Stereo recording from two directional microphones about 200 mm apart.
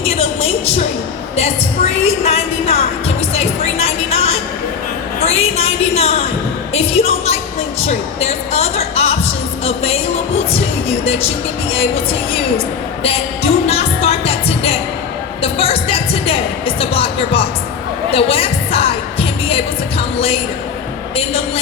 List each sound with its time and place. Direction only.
0.0 s a sound: 30° left (ahead or behind)
3.3 s music: 30° left (ahead or behind)
5.2 s a sound: 30° left (ahead or behind)
6.7 s music: 30° left (ahead or behind)
12.3 s music: 30° left (ahead or behind)
21.2 s a woman's voice: 30° left (ahead or behind)